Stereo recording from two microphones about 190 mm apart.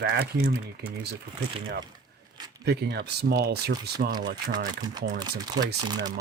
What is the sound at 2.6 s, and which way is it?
Speech, 60° right (ahead or behind).